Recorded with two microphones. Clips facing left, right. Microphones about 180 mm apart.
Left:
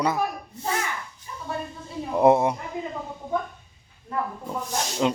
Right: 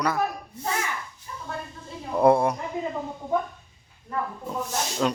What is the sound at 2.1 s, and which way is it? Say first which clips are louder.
Speech: left 1 dB; 20° left (ahead or behind).